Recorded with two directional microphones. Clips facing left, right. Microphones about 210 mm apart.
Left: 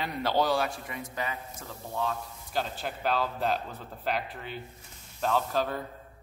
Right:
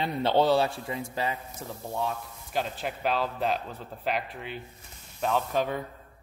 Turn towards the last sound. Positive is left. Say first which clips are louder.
# right 1 dB
turn(degrees=0)  # may be behind; listen again after turning